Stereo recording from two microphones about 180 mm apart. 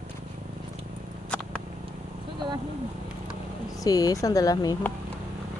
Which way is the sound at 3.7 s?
20° left (ahead or behind).